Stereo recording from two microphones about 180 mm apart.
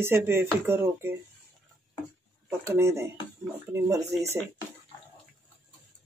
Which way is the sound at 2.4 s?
15° right (ahead or behind).